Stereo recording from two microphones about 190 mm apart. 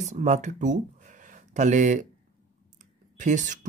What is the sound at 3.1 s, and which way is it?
Speech, 40° right (ahead or behind).